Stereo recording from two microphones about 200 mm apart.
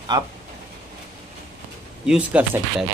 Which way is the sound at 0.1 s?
20° right (ahead or behind).